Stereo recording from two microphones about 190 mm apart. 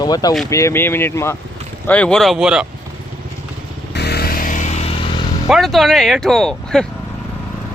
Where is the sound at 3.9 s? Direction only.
60° left (ahead or behind); by 4.7 s 40° left (ahead or behind).